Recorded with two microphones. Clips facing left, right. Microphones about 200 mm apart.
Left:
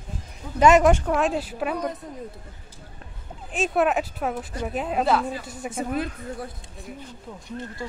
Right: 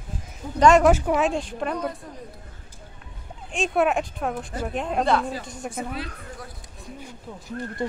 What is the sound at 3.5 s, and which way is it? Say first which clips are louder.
A woman's voice: even; centre (ahead or behind).